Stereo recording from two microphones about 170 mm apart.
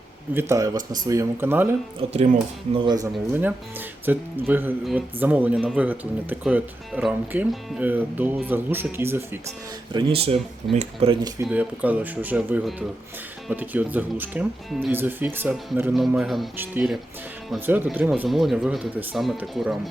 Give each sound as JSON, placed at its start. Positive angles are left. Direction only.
{"t": 0.3, "sound": "speech", "side_deg": -15}
{"t": 2.0, "sound": "speech", "side_deg": -35}
{"t": 2.7, "sound": "speech", "side_deg": -25}
{"t": 3.3, "sound": "speech", "side_deg": -10}
{"t": 9.9, "sound": "speech", "side_deg": -35}
{"t": 11.4, "sound": "speech", "side_deg": -10}